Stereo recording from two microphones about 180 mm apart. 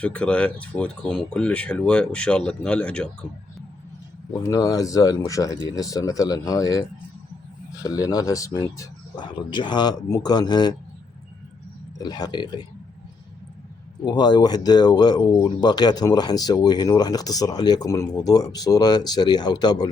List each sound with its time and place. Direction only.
0.0 s speech: 5° left (ahead or behind)
4.4 s speech: 20° left (ahead or behind)
11.9 s speech: 20° left (ahead or behind)
14.0 s speech: 25° left (ahead or behind)